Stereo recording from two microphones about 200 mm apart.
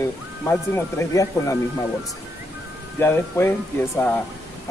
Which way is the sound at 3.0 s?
10° left (ahead or behind).